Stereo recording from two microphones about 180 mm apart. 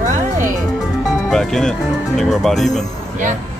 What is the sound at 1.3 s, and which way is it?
Speech, 5° left (ahead or behind).